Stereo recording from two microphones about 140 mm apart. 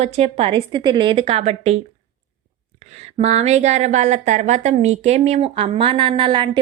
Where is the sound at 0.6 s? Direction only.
35° right (ahead or behind).